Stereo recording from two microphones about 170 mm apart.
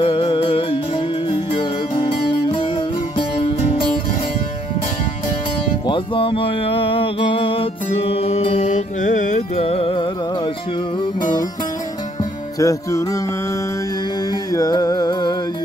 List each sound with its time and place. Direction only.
0.0 s music: 30° left (ahead or behind)
3.2 s music: 35° left (ahead or behind)
5.9 s music: 30° left (ahead or behind)
12.5 s music: 20° left (ahead or behind)
14.5 s music: 20° left (ahead or behind)